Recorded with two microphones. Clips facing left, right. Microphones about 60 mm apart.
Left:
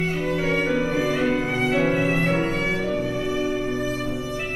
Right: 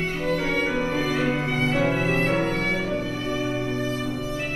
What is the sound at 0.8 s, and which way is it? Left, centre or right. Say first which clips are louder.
Violin: left 2 dB; centre.